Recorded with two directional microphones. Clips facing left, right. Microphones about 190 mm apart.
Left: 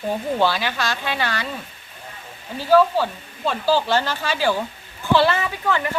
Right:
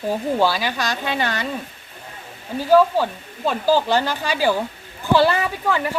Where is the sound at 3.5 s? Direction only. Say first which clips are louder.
Right 2 dB; 15° right (ahead or behind).